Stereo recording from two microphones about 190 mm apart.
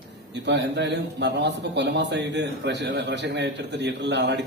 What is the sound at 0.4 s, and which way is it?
A man's voice, 65° right (ahead or behind).